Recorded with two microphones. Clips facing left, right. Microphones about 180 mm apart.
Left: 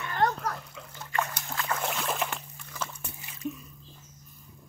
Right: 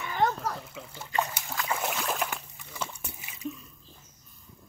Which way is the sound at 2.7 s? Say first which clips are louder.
Even; 10° right (ahead or behind).